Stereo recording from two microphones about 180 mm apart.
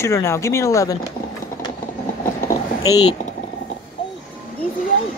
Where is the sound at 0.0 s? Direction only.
15° left (ahead or behind).